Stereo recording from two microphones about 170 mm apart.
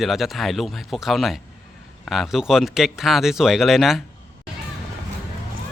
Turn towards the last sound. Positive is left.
turn(degrees=0)  # may be behind; listen again after turning